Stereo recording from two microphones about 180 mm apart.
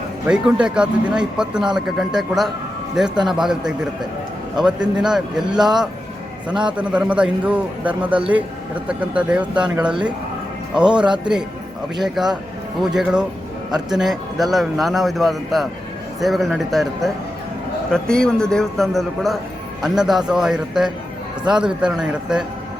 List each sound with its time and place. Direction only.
0.3 s speech: 5° right (ahead or behind)
6.6 s a man's voice: 5° right (ahead or behind)
12.0 s speech: centre (ahead or behind)